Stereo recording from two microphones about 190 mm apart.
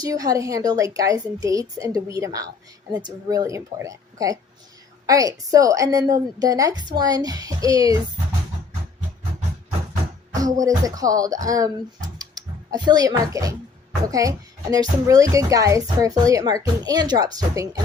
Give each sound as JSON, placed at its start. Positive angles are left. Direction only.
{"t": 0.0, "sound": "a woman's voice", "side_deg": -20}
{"t": 10.3, "sound": "a woman's voice", "side_deg": -20}